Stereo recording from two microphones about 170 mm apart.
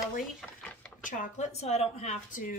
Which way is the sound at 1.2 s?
40° left (ahead or behind).